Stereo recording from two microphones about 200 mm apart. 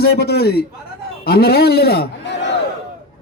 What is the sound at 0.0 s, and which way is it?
A man's voice, 55° left (ahead or behind).